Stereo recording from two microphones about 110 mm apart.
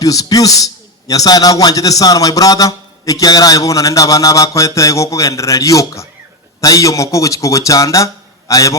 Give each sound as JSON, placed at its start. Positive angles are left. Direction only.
{"t": 0.0, "sound": "a man's voice", "side_deg": 30}